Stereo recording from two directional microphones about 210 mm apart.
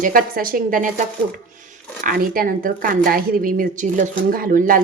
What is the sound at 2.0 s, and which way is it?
Speech, 45° right (ahead or behind).